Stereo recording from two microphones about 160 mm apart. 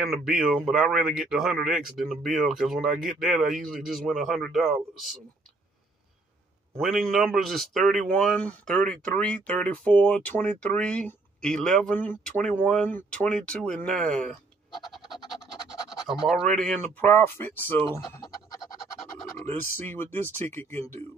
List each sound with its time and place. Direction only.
0.0 s a man's voice: centre (ahead or behind)
6.8 s speech: centre (ahead or behind)
15.0 s scratch: centre (ahead or behind)
16.8 s speech: 15° left (ahead or behind)
18.1 s music: 25° left (ahead or behind)
19.3 s speech: 10° left (ahead or behind)